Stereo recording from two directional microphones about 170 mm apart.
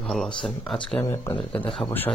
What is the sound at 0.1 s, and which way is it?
Speech, centre (ahead or behind).